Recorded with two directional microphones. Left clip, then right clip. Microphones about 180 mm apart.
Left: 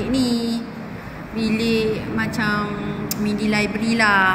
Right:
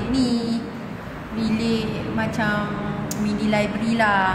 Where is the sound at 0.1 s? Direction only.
10° right (ahead or behind).